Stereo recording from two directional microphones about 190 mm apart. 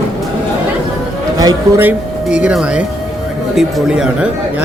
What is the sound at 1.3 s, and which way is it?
Speech, 15° right (ahead or behind).